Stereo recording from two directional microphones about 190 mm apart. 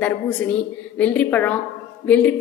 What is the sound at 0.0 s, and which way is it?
A woman's voice, 10° left (ahead or behind).